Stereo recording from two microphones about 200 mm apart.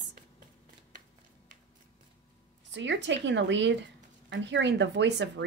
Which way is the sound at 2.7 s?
65° right (ahead or behind).